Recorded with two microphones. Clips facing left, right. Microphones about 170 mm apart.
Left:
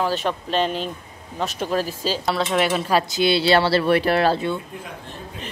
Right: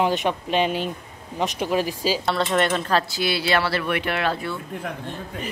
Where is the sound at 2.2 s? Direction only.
Centre (ahead or behind); by 4.4 s 35° left (ahead or behind).